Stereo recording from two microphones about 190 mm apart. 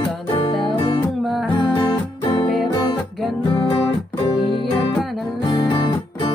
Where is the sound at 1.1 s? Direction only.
Centre (ahead or behind).